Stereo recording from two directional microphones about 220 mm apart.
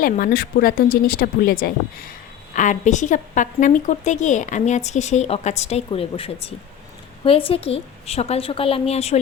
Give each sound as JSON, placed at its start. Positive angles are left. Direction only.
{"t": 0.0, "sound": "a woman's voice", "side_deg": 40}